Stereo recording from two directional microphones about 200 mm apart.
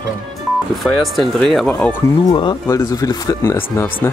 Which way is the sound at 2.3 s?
20° left (ahead or behind).